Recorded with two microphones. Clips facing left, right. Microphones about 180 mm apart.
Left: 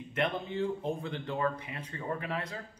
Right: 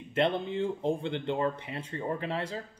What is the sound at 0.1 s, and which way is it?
Speech, 30° right (ahead or behind).